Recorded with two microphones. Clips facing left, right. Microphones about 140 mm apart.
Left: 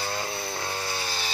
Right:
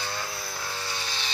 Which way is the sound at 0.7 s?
40° left (ahead or behind).